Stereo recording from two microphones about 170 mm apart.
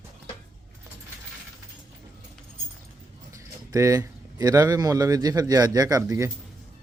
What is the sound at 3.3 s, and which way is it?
Speech, 20° right (ahead or behind).